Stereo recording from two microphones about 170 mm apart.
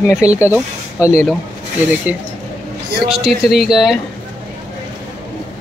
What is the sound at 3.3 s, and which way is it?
Speech, centre (ahead or behind).